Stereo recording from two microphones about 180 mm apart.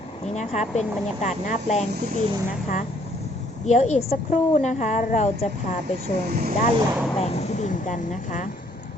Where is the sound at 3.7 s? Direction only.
40° left (ahead or behind).